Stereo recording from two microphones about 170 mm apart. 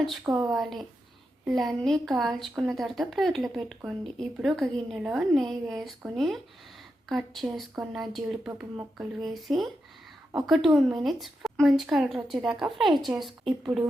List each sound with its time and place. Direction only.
0.3 s speech: 20° right (ahead or behind)
0.5 s a woman's voice: centre (ahead or behind)